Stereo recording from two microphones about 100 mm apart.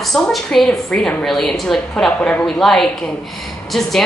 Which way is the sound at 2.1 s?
15° left (ahead or behind).